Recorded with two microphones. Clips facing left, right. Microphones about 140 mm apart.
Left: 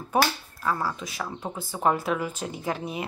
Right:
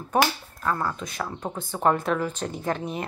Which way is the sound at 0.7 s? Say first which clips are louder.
Right 1 dB; 5° left (ahead or behind).